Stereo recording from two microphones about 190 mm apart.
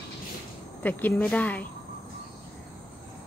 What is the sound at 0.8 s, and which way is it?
Speech, 10° left (ahead or behind).